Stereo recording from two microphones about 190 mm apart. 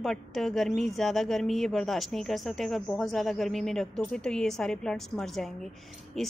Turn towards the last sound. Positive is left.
turn(degrees=0)  # may be behind; listen again after turning